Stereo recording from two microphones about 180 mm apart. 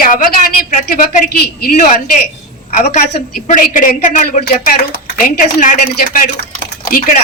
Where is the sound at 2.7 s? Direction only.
40° left (ahead or behind).